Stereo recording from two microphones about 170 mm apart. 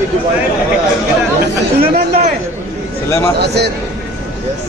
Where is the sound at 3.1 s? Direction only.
15° left (ahead or behind).